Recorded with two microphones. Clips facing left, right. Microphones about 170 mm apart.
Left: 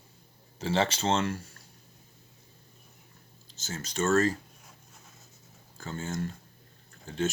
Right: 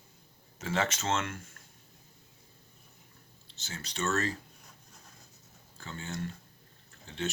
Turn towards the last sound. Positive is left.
turn(degrees=45)  # may be behind; listen again after turning